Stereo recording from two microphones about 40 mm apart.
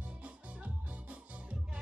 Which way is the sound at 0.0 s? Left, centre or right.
Right.